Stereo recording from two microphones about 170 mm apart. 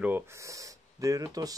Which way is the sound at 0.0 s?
15° right (ahead or behind).